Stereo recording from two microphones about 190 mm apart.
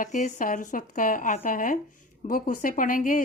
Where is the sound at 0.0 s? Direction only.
40° left (ahead or behind).